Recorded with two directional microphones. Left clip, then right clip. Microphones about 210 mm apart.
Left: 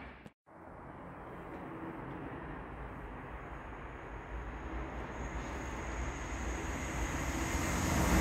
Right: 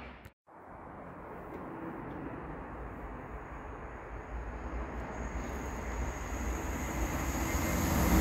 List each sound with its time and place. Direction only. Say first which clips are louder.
6.5 s vehicle: right 2 dB; 25° left (ahead or behind)